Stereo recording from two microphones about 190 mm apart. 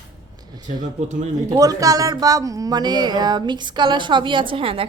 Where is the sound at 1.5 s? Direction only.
20° right (ahead or behind).